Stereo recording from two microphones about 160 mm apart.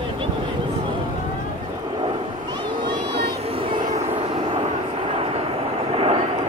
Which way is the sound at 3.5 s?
35° right (ahead or behind).